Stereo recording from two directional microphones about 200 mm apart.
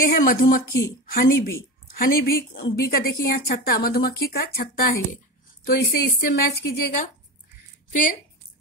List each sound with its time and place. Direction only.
0.0 s speech: 45° left (ahead or behind)